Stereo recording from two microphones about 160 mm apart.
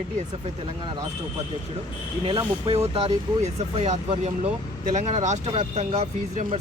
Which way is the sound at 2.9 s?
40° right (ahead or behind).